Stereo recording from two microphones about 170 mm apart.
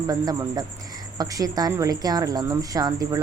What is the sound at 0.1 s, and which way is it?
Speech, 20° right (ahead or behind).